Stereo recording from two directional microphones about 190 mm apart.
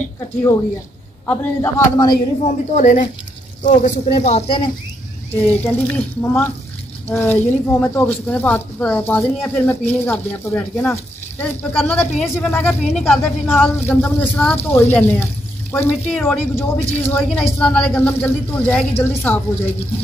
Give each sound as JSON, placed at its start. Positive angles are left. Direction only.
{"t": 1.2, "sound": "speech", "side_deg": 10}
{"t": 2.4, "sound": "speech", "side_deg": 40}
{"t": 5.3, "sound": "speech", "side_deg": 10}